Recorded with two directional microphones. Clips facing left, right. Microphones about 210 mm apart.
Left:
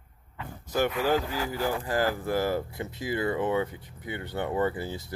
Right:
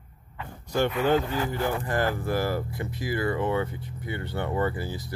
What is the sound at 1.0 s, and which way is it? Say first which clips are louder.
Speech: right 3 dB; 5° left (ahead or behind).